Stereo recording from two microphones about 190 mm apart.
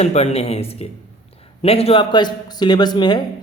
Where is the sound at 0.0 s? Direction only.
35° left (ahead or behind).